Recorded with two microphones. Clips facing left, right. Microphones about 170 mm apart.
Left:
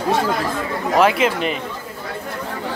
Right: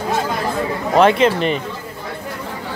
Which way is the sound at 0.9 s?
5° left (ahead or behind).